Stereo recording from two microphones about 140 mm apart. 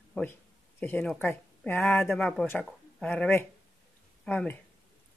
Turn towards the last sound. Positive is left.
turn(degrees=10)  # may be behind; listen again after turning